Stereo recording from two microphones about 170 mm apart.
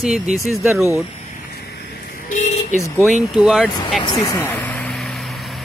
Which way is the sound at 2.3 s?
45° left (ahead or behind).